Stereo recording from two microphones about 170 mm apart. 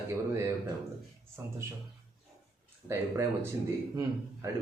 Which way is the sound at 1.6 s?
15° right (ahead or behind).